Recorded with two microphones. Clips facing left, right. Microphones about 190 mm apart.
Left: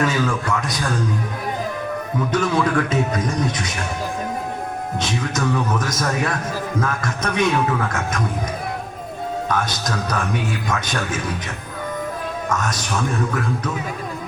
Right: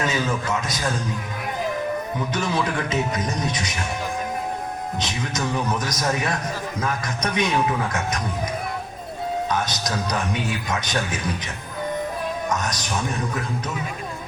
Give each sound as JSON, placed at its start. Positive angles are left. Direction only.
{"t": 0.0, "sound": "speech", "side_deg": -20}
{"t": 2.3, "sound": "speech", "side_deg": -20}
{"t": 5.8, "sound": "speech", "side_deg": -20}
{"t": 9.5, "sound": "speech", "side_deg": -20}
{"t": 12.5, "sound": "a man's voice", "side_deg": -20}